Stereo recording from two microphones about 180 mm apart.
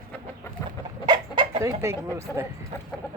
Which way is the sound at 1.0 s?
25° right (ahead or behind).